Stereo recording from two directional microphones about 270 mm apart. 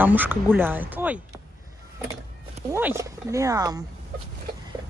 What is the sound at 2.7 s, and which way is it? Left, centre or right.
Speech, centre.